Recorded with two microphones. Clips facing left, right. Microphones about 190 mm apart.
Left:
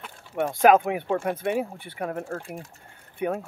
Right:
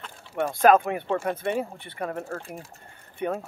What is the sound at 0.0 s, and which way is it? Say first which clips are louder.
Speech: left 1 dB; 10° left (ahead or behind).